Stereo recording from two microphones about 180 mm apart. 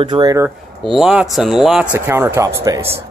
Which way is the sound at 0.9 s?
Centre (ahead or behind).